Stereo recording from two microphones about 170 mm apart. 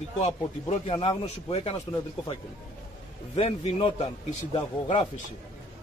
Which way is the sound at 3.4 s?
35° left (ahead or behind).